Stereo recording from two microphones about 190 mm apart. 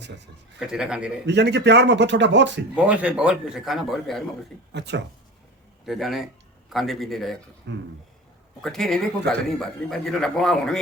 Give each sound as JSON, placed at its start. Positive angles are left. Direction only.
{"t": 0.7, "sound": "speech", "side_deg": -5}
{"t": 1.3, "sound": "a man's voice", "side_deg": -65}
{"t": 2.7, "sound": "speech", "side_deg": -5}
{"t": 4.7, "sound": "speech", "side_deg": -65}
{"t": 5.8, "sound": "speech", "side_deg": 0}
{"t": 7.7, "sound": "speech", "side_deg": -65}
{"t": 8.6, "sound": "speech", "side_deg": 0}